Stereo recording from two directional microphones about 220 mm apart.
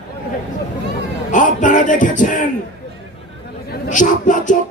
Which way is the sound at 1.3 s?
35° left (ahead or behind).